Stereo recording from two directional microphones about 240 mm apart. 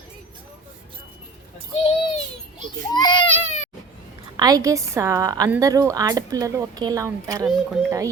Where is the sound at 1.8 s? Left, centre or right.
Left.